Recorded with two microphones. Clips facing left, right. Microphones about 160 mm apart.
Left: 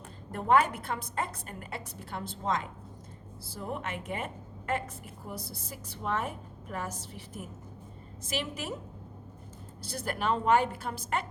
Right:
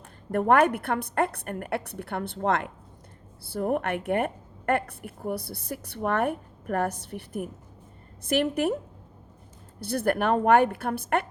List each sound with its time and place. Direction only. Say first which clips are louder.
0.3 s a woman's voice: right 5 dB; 60° right (ahead or behind)
9.8 s a woman's voice: right 8 dB; 60° right (ahead or behind)